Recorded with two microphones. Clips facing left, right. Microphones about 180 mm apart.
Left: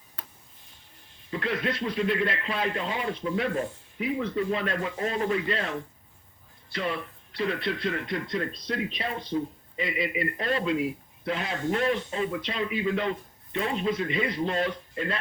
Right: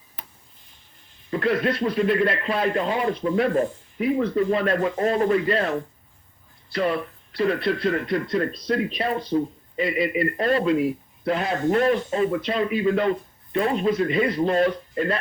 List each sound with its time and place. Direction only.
1.3 s speech: 50° right (ahead or behind)